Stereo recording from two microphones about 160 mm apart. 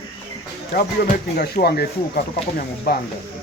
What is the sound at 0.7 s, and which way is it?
Speech, 70° left (ahead or behind).